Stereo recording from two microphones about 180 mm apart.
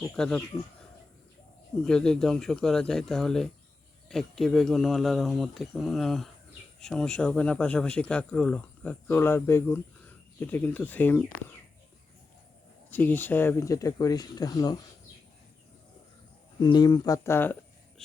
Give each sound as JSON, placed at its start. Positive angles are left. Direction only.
{"t": 0.0, "sound": "speech", "side_deg": 0}
{"t": 1.8, "sound": "speech", "side_deg": 5}
{"t": 12.9, "sound": "speech", "side_deg": 10}
{"t": 16.6, "sound": "speech", "side_deg": 25}